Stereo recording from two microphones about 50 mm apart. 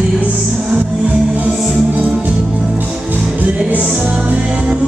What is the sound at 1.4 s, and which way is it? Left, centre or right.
Music, right.